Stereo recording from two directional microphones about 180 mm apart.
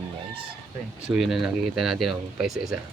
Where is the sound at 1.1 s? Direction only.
5° right (ahead or behind).